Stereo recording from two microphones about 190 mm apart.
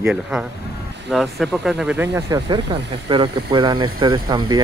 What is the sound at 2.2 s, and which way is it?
Speech, 20° right (ahead or behind).